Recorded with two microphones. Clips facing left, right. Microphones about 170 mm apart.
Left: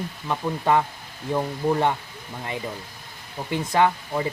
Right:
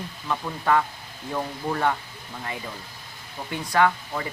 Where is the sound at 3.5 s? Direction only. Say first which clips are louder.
Left 1 dB; 25° left (ahead or behind).